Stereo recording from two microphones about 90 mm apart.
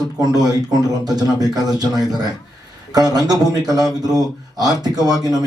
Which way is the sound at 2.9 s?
45° right (ahead or behind).